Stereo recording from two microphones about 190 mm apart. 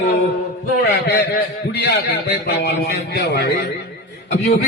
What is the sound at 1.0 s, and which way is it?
A man's voice, 55° left (ahead or behind).